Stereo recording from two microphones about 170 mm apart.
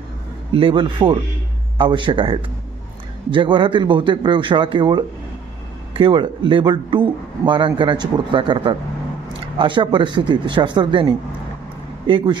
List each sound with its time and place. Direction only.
0.5 s speech: 30° right (ahead or behind)